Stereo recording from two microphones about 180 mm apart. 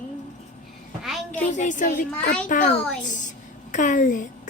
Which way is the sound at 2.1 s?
5° left (ahead or behind).